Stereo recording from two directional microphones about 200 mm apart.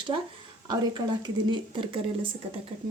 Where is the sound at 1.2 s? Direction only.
25° right (ahead or behind).